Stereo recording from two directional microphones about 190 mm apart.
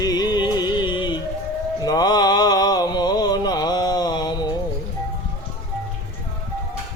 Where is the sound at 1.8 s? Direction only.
20° left (ahead or behind).